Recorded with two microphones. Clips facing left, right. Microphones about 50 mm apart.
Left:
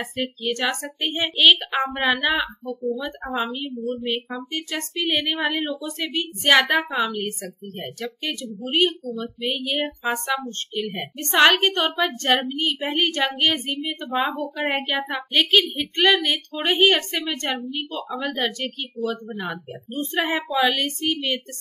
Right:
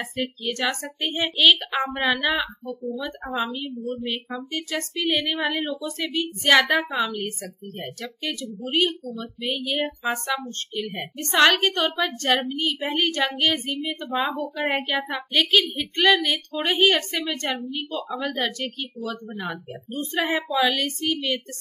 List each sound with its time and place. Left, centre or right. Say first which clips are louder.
0.2 s a woman's voice: left 2 dB; left
1.8 s child singing: left 1 dB; left
2.6 s speech: left 3 dB; centre
3.3 s a woman's voice: left 1 dB; centre
7.7 s child singing: left 4 dB; centre
10.0 s a woman's voice: left 3 dB; left
10.7 s child singing: left 2 dB; centre
11.5 s a woman's voice: left 2 dB; left
13.8 s child singing: left 2 dB; centre
15.8 s a woman's voice: even; centre
17.6 s child singing: even; centre
19.9 s a woman's voice: left 1 dB; left
20.2 s a woman's voice: even; centre